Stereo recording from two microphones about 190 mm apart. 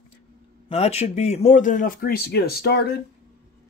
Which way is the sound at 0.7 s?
35° left (ahead or behind).